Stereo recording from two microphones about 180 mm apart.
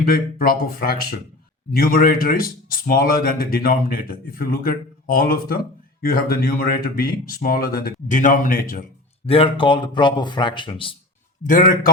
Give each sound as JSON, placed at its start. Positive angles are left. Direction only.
{"t": 0.0, "sound": "speech", "side_deg": 55}
{"t": 9.2, "sound": "speech", "side_deg": 30}
{"t": 11.4, "sound": "speech", "side_deg": 50}